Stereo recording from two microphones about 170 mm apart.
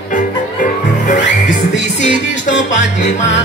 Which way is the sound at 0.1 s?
50° left (ahead or behind).